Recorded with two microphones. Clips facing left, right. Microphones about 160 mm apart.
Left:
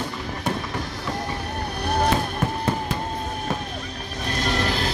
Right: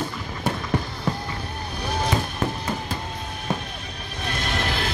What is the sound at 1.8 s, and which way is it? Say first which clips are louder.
Fireworks: left 4 dB; 65° left (ahead or behind).